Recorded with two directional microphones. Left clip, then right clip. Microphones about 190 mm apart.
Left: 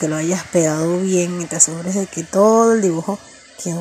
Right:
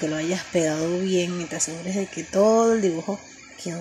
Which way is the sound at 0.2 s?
20° left (ahead or behind).